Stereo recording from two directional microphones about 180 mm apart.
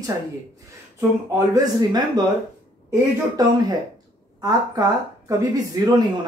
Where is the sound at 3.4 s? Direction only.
20° right (ahead or behind).